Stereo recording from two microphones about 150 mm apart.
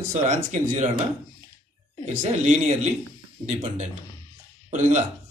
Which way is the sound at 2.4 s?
55° right (ahead or behind).